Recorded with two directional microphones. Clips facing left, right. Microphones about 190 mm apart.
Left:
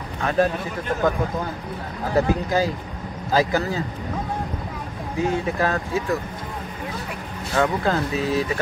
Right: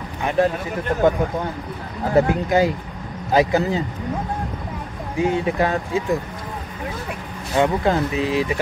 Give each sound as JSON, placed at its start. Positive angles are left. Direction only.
{"t": 0.2, "sound": "a man's voice", "side_deg": -15}
{"t": 2.1, "sound": "speech", "side_deg": -20}
{"t": 5.2, "sound": "speech", "side_deg": -20}
{"t": 7.5, "sound": "speech", "side_deg": -20}